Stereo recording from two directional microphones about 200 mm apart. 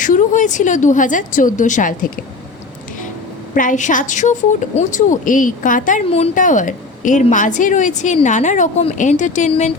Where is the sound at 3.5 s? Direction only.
40° left (ahead or behind).